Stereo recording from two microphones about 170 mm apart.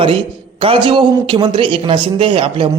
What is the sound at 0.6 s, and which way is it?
A man's voice, 30° right (ahead or behind).